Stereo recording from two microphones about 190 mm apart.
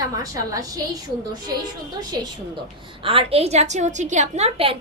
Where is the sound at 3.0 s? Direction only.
30° right (ahead or behind).